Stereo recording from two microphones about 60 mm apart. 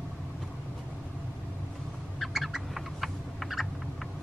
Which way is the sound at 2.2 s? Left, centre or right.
Centre.